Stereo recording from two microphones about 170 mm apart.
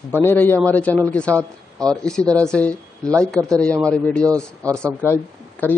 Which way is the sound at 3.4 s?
20° right (ahead or behind).